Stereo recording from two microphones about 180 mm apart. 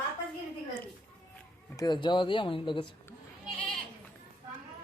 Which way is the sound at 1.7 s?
25° left (ahead or behind).